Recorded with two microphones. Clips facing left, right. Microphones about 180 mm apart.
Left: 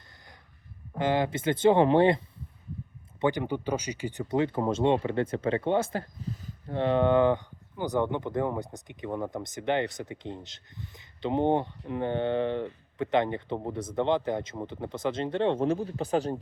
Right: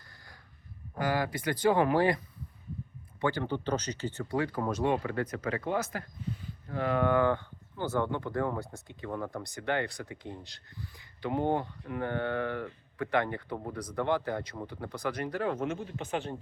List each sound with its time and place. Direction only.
0.9 s speech: 25° left (ahead or behind); by 6.7 s 40° left (ahead or behind)
6.7 s speech: 25° left (ahead or behind)